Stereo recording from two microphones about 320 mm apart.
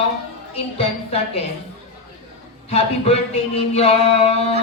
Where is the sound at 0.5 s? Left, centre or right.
Centre.